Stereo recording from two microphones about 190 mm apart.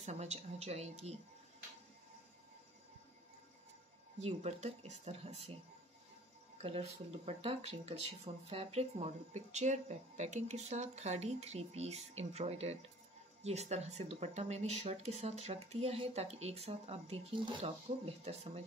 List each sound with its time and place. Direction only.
0.0 s speech: 35° right (ahead or behind)
4.2 s speech: 35° right (ahead or behind)
6.6 s speech: 30° right (ahead or behind)